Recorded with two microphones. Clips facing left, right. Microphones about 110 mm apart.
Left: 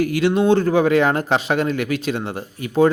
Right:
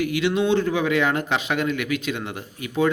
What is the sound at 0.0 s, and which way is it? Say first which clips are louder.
A man's voice: left 4 dB; 40° left (ahead or behind).